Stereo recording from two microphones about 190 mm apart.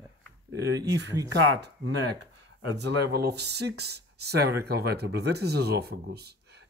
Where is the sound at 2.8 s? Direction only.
60° right (ahead or behind).